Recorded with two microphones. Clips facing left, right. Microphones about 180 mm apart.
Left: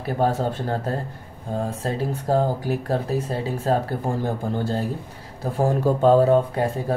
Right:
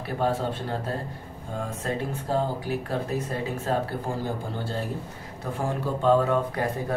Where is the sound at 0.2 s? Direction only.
45° left (ahead or behind).